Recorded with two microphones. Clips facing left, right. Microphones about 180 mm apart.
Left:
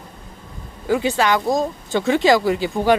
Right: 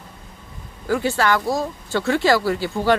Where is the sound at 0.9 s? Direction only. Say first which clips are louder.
Left 2 dB; 20° left (ahead or behind).